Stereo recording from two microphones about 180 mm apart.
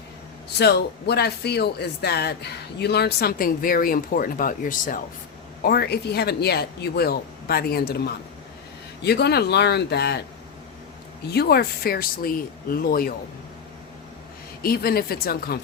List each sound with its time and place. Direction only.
0.6 s speech: 65° left (ahead or behind); by 5.0 s 50° left (ahead or behind)
5.6 s speech: 60° left (ahead or behind)
11.3 s speech: 60° left (ahead or behind)
14.6 s speech: 55° left (ahead or behind)